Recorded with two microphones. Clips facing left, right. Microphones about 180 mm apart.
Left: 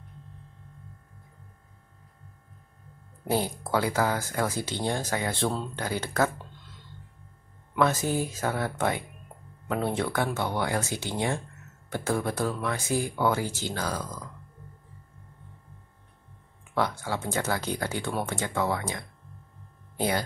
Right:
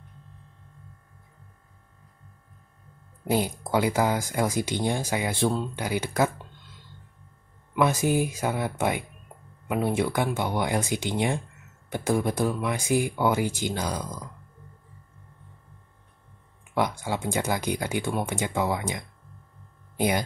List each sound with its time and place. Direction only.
3.3 s speech: 15° right (ahead or behind)
7.7 s speech: 10° right (ahead or behind)
16.7 s speech: 15° right (ahead or behind)